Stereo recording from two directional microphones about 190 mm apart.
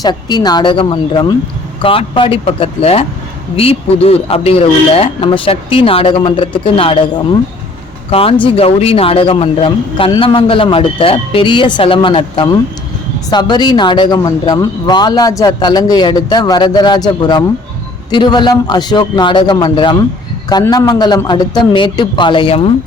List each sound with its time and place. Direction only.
0.0 s a man's voice: 20° left (ahead or behind)
8.1 s a man's voice: 30° left (ahead or behind)